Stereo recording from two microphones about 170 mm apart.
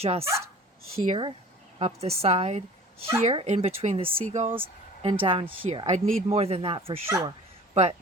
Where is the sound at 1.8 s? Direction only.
35° right (ahead or behind).